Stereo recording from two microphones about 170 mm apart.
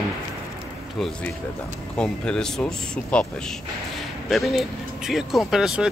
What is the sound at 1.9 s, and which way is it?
Speech, 5° left (ahead or behind).